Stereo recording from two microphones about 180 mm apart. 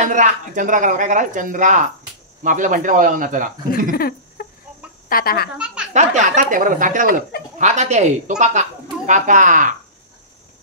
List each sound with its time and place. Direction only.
0.0 s speech: 45° right (ahead or behind)
3.9 s a sound: 55° left (ahead or behind)
5.1 s speech: 55° left (ahead or behind)
5.9 s speech: 45° right (ahead or behind)